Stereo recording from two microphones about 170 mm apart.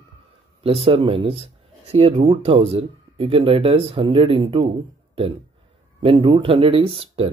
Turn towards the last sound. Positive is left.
turn(degrees=-35)  # may be behind; listen again after turning